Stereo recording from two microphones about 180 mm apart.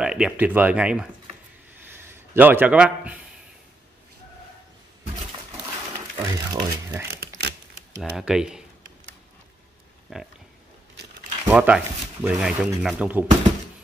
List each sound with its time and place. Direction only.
0.0 s speech: 5° right (ahead or behind)
2.0 s a man's voice: 10° right (ahead or behind)
6.1 s a sound: 20° right (ahead or behind)
7.4 s typewriter: 70° right (ahead or behind)
8.0 s speech: centre (ahead or behind)
10.1 s speech: 5° right (ahead or behind)
11.4 s speech: 5° right (ahead or behind)